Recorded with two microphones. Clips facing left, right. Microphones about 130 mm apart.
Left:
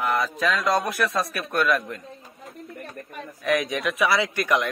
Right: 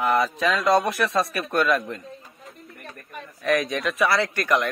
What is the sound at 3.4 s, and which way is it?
Speech, 15° left (ahead or behind).